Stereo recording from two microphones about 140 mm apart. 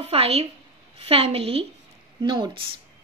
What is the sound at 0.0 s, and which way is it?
A woman's voice, 45° right (ahead or behind).